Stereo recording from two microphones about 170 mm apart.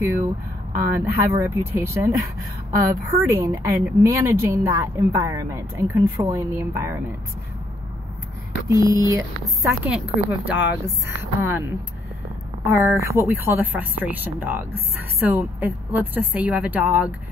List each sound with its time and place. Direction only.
0.7 s speech: 15° right (ahead or behind)
8.6 s speech: 20° right (ahead or behind)
9.8 s speech: 10° right (ahead or behind)
12.6 s speech: 15° right (ahead or behind)